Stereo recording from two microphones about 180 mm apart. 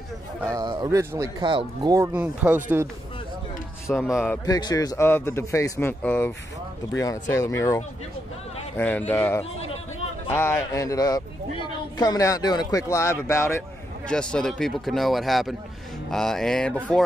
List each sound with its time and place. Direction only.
0.5 s speech: 20° right (ahead or behind)
3.9 s speech: 5° left (ahead or behind)
4.5 s speech: 20° left (ahead or behind); by 17.0 s 5° left (ahead or behind)